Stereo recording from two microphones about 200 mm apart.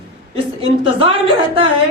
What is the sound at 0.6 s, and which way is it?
Speech, 30° right (ahead or behind).